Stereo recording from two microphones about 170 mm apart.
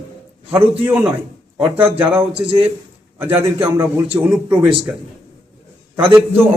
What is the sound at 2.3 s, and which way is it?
Speech, 30° right (ahead or behind).